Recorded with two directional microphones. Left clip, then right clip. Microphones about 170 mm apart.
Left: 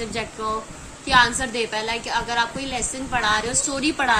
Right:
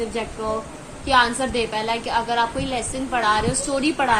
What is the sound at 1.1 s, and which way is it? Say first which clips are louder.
A woman's voice: even; 15° left (ahead or behind).